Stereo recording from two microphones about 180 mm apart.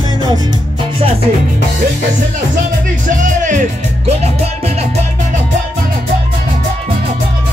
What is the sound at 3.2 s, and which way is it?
Music, 45° right (ahead or behind).